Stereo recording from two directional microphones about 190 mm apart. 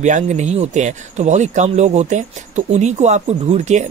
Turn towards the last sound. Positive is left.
turn(degrees=-40)  # may be behind; listen again after turning